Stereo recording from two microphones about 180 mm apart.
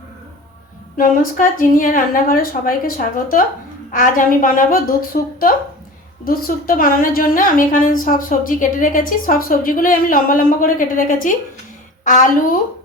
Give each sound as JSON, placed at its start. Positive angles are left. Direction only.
{"t": 0.9, "sound": "a woman's voice", "side_deg": 50}